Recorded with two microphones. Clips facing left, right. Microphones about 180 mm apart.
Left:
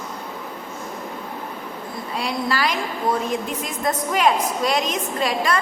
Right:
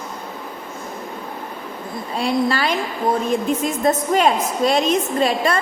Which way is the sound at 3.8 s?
30° right (ahead or behind).